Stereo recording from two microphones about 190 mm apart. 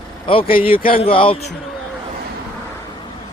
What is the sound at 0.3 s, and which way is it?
Speech, 30° left (ahead or behind).